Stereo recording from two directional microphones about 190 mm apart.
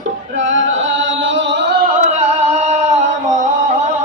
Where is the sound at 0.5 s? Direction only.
90° right; by 1.8 s 65° right (ahead or behind).